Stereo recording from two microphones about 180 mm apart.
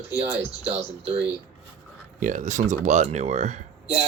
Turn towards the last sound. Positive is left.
turn(degrees=-40)  # may be behind; listen again after turning